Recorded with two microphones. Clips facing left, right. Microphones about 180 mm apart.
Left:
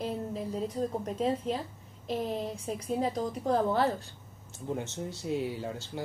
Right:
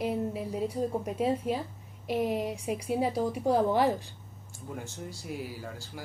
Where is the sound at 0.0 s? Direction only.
10° right (ahead or behind).